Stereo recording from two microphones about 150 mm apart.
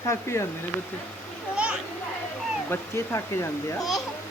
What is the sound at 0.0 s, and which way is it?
Speech, 20° left (ahead or behind).